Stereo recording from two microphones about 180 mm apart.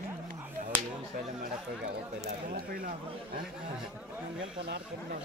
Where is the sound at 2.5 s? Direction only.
55° right (ahead or behind).